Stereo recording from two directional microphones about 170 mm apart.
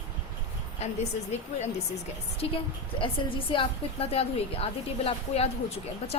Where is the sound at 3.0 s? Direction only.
30° left (ahead or behind).